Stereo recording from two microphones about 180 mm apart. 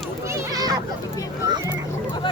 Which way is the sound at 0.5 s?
20° right (ahead or behind).